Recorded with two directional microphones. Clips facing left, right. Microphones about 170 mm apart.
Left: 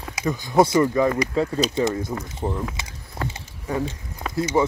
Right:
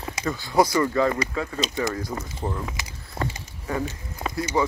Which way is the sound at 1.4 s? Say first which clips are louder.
Left 6 dB; 35° left (ahead or behind).